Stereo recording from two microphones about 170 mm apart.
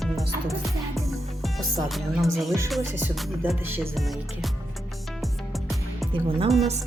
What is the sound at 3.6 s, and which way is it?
Speech, 10° right (ahead or behind).